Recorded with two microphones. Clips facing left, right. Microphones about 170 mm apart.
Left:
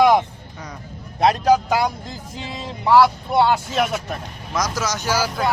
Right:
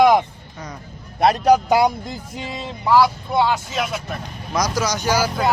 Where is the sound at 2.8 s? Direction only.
Centre (ahead or behind).